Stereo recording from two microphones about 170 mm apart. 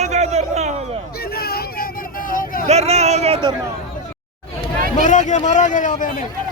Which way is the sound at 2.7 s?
40° right (ahead or behind).